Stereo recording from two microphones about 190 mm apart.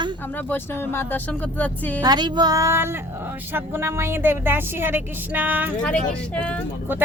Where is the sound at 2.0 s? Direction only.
20° right (ahead or behind).